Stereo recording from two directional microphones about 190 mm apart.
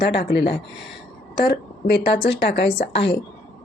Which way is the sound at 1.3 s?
50° left (ahead or behind).